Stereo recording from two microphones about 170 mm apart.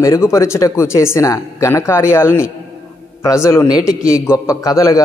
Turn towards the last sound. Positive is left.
turn(degrees=20)  # may be behind; listen again after turning